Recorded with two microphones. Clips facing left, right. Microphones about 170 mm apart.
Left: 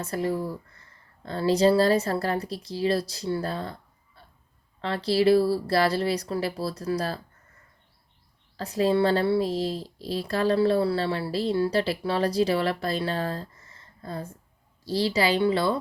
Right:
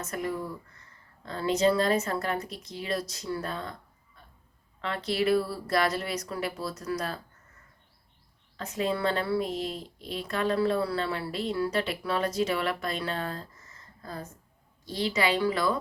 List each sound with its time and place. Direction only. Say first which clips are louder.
0.0 s speech: left 5 dB; 30° left (ahead or behind)
8.5 s speech: left 7 dB; 35° left (ahead or behind)